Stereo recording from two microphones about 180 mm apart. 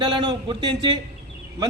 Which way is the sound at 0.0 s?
25° right (ahead or behind).